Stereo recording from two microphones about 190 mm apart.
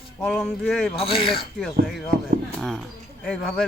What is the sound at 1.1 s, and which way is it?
Speech, 30° left (ahead or behind).